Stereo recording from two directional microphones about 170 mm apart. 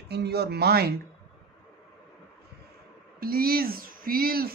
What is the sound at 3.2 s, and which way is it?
Speech, 60° right (ahead or behind).